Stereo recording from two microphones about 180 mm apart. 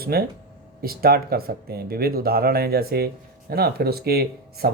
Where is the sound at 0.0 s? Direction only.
60° right (ahead or behind).